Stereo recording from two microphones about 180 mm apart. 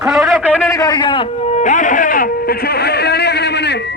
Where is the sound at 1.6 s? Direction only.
45° left (ahead or behind); by 3.8 s 70° left (ahead or behind).